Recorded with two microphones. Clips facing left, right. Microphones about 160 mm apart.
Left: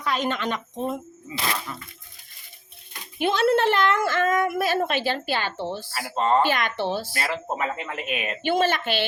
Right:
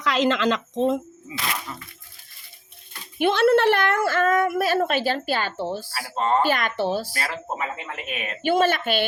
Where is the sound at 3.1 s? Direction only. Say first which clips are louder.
Right 3 dB; 55° right (ahead or behind).